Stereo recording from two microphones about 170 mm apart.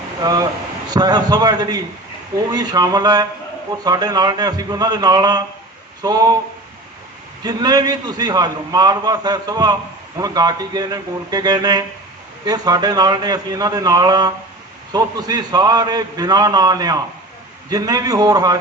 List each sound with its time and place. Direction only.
0.2 s a man's voice: 20° right (ahead or behind)
7.4 s a man's voice: 25° right (ahead or behind)